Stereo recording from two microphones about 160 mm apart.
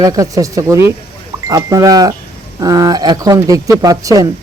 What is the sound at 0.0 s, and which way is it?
Speech, 20° right (ahead or behind).